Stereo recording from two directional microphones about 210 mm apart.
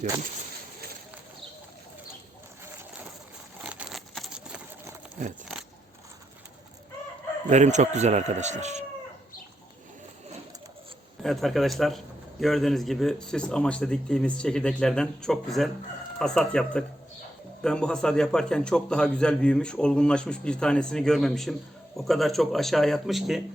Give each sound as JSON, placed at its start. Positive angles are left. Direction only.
{"t": 3.6, "sound": "a sound", "side_deg": -5}
{"t": 7.5, "sound": "speech", "side_deg": -35}
{"t": 11.2, "sound": "a man's voice", "side_deg": 0}